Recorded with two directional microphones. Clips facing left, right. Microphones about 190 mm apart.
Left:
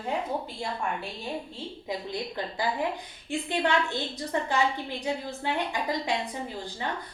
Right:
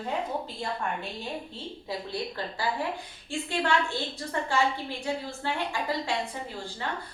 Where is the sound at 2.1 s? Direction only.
15° left (ahead or behind).